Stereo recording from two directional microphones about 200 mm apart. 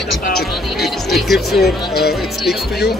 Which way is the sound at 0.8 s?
Centre (ahead or behind).